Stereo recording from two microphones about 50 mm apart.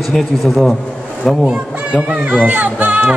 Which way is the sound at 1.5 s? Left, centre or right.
Centre.